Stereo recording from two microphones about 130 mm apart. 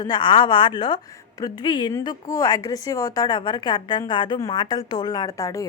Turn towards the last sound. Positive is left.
turn(degrees=25)  # may be behind; listen again after turning